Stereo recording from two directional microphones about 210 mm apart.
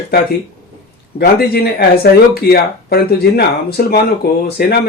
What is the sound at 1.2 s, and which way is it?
Speech, 45° left (ahead or behind).